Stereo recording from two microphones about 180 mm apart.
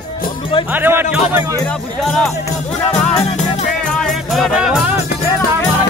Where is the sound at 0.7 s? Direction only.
10° right (ahead or behind).